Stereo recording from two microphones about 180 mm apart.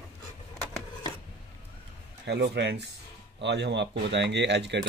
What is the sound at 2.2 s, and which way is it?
Speech, 70° right (ahead or behind).